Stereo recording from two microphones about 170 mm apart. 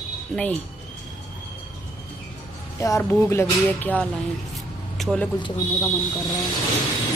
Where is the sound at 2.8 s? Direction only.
15° left (ahead or behind).